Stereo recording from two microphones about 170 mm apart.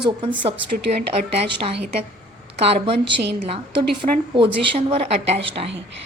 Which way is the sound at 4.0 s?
30° right (ahead or behind).